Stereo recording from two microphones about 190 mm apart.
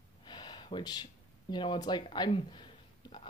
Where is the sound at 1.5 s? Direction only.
25° left (ahead or behind).